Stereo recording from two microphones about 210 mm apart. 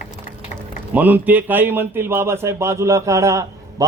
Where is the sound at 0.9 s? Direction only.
10° right (ahead or behind).